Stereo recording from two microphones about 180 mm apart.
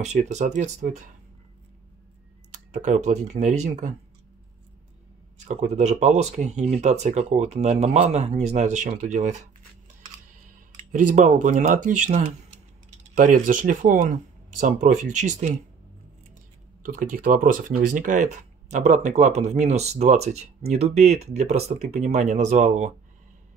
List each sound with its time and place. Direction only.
0.0 s speech: 40° right (ahead or behind)
2.7 s speech: 40° right (ahead or behind)
5.4 s speech: 40° right (ahead or behind)
10.9 s speech: 45° right (ahead or behind)
16.8 s speech: 50° right (ahead or behind)